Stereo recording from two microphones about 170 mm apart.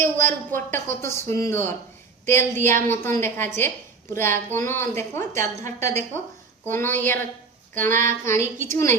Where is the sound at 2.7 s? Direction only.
50° right (ahead or behind).